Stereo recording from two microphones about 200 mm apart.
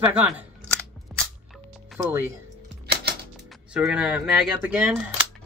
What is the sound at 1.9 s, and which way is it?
Speech, 10° right (ahead or behind).